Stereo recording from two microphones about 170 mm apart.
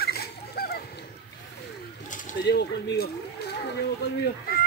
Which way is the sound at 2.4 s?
85° left.